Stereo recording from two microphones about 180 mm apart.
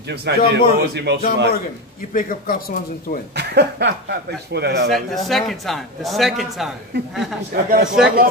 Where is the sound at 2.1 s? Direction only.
50° left (ahead or behind).